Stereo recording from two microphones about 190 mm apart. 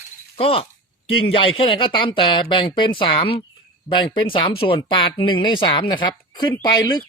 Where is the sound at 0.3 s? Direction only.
30° left (ahead or behind).